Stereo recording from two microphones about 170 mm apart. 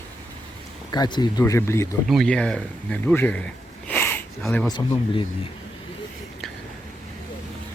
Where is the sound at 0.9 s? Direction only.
25° left (ahead or behind).